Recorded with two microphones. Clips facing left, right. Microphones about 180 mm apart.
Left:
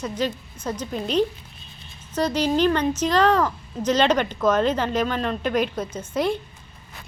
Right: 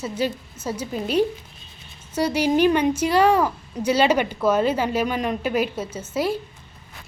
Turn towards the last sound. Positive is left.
turn(degrees=-5)  # may be behind; listen again after turning